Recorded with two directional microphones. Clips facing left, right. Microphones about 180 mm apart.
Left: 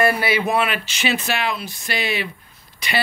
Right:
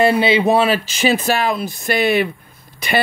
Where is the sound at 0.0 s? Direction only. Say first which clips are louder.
Right 5 dB; 25° right (ahead or behind).